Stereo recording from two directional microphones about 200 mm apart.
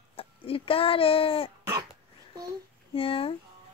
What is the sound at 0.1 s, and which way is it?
Speech, 25° left (ahead or behind).